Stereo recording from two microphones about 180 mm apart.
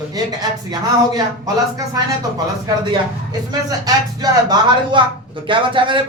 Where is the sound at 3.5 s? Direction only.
20° right (ahead or behind).